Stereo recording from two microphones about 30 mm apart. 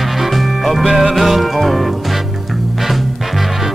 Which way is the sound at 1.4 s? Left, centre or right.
Centre.